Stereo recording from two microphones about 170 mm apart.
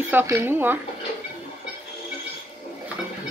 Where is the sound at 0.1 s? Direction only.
15° right (ahead or behind).